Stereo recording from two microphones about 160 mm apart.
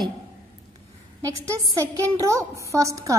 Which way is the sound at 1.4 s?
20° right (ahead or behind).